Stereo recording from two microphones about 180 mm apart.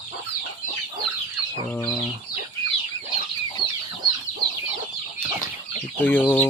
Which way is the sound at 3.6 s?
65° right (ahead or behind).